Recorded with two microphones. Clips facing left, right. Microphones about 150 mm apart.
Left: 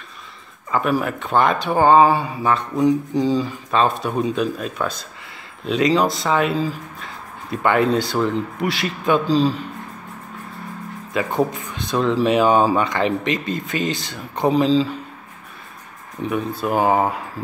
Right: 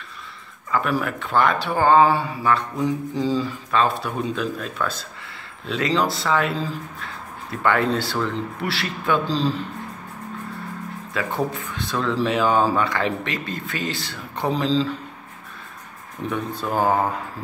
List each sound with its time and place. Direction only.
0.7 s speech: 20° left (ahead or behind)
11.1 s speech: 20° left (ahead or behind)
16.3 s speech: 10° left (ahead or behind)